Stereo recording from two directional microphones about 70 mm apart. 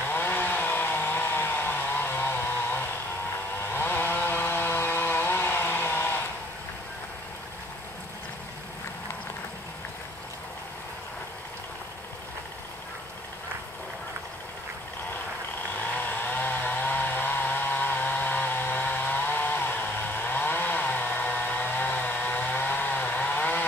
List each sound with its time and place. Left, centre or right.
0.1 s chainsaw: left
15.9 s chainsaw: left